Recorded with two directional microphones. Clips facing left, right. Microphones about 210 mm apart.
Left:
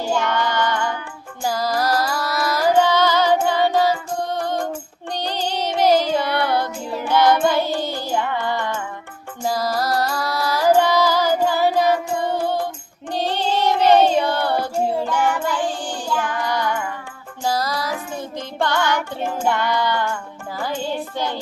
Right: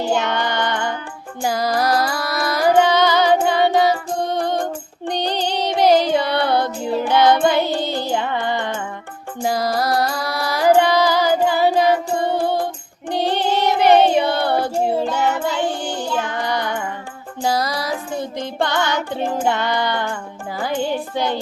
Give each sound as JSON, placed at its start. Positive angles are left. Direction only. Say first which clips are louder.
{"t": 0.0, "sound": "music", "louder": "right 1 dB", "side_deg": -20}
{"t": 10.0, "sound": "carnatic music", "louder": "right 1 dB", "side_deg": -15}
{"t": 13.1, "sound": "child singing", "louder": "right 3 dB", "side_deg": -15}
{"t": 17.4, "sound": "music", "louder": "right 2 dB", "side_deg": -15}